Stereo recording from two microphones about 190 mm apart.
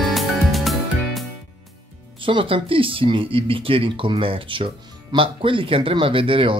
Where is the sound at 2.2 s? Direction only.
25° right (ahead or behind).